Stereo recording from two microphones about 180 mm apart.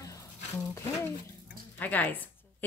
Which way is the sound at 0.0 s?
20° left (ahead or behind).